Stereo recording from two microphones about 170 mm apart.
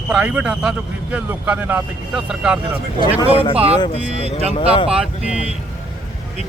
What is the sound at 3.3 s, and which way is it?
Speech, 35° left (ahead or behind).